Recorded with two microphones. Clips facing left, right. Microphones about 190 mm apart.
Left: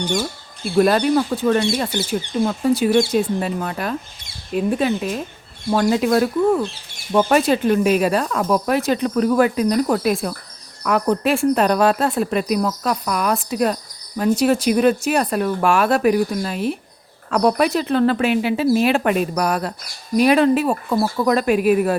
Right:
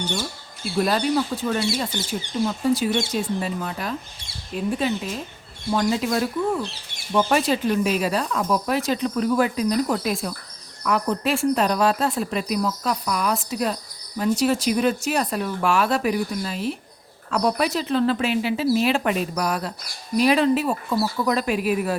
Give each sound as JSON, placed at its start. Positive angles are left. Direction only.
{"t": 0.8, "sound": "speech", "side_deg": 55}